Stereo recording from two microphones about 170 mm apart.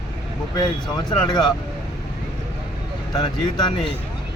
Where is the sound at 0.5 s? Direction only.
25° left (ahead or behind).